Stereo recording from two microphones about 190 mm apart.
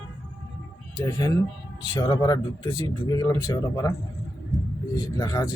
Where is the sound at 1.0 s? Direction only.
20° left (ahead or behind).